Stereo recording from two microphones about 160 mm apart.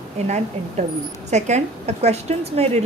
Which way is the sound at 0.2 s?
45° right (ahead or behind).